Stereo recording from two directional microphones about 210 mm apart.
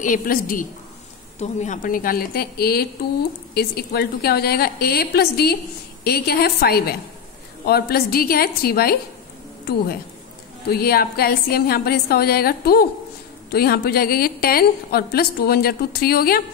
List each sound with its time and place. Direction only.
0.0 s a woman's voice: 40° left (ahead or behind)
10.7 s a woman's voice: 45° left (ahead or behind)